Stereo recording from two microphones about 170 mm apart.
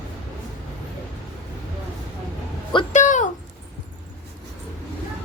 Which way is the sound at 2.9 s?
45° left (ahead or behind).